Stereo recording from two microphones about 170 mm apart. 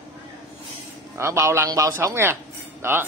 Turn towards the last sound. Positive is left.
turn(degrees=-15)  # may be behind; listen again after turning